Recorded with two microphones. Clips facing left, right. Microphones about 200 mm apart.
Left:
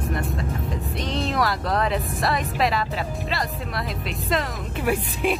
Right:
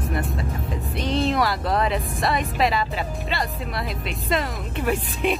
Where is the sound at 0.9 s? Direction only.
Centre (ahead or behind).